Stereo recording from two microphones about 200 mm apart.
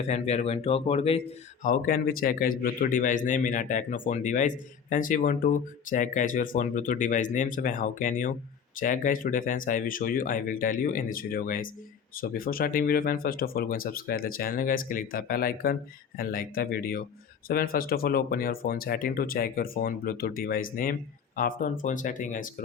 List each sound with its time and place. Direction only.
0.1 s speech: 35° left (ahead or behind)
1.6 s a man's voice: 40° left (ahead or behind)